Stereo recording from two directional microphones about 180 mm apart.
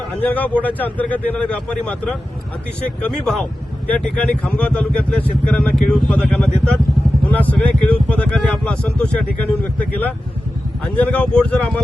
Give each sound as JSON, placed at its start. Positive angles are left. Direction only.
{"t": 0.2, "sound": "speech", "side_deg": 10}
{"t": 10.8, "sound": "speech", "side_deg": 5}